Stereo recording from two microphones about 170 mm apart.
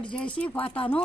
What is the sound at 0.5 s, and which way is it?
Speech, 30° left (ahead or behind).